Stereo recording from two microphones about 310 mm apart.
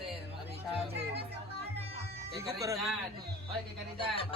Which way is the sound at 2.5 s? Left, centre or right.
Centre.